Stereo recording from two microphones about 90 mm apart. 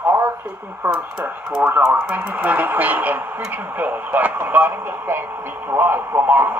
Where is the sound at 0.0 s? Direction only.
30° right (ahead or behind).